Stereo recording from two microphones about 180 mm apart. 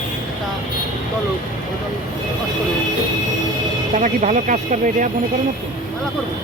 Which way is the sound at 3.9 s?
45° right (ahead or behind).